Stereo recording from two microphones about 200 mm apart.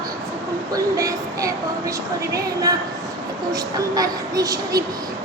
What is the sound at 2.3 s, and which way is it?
Speech, 15° right (ahead or behind).